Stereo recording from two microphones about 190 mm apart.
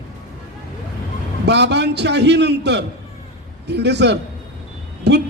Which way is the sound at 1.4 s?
65° right (ahead or behind).